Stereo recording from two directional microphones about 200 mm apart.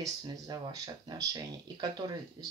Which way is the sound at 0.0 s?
20° right (ahead or behind).